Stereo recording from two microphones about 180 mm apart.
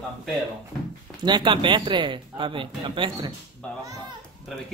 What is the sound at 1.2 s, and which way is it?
Speech, 25° right (ahead or behind).